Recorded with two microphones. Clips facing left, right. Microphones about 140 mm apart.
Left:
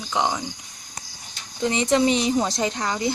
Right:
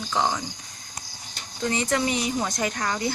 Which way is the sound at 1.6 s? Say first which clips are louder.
Left 5 dB; 20° left (ahead or behind).